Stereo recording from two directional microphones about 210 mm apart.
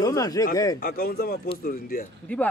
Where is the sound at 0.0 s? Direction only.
15° left (ahead or behind).